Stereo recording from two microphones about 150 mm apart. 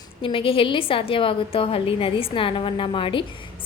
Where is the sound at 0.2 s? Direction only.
35° left (ahead or behind).